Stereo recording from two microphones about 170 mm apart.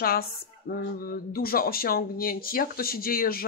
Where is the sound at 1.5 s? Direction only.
60° left (ahead or behind).